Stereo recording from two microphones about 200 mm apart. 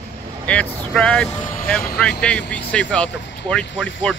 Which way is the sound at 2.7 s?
5° left (ahead or behind).